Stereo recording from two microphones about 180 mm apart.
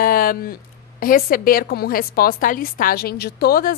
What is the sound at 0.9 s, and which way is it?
A woman's voice, 50° left (ahead or behind).